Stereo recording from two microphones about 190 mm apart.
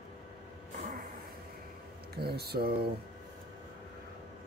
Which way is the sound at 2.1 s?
55° right (ahead or behind).